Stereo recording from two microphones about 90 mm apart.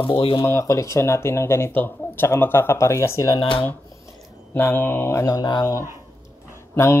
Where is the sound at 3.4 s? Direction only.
75° left (ahead or behind).